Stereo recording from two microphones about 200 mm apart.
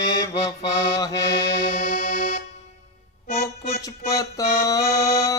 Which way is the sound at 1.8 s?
40° left (ahead or behind).